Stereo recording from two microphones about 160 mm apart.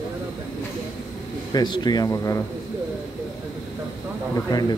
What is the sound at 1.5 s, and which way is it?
Speech, 25° left (ahead or behind).